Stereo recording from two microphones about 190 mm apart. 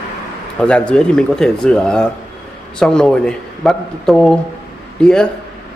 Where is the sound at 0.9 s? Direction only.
5° left (ahead or behind).